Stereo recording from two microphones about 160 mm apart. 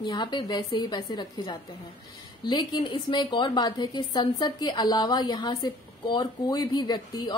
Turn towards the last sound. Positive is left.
turn(degrees=25)  # may be behind; listen again after turning